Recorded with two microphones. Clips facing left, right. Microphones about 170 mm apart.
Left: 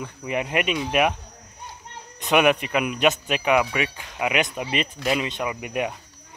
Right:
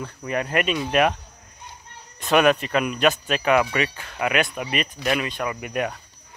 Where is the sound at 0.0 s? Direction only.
15° left (ahead or behind).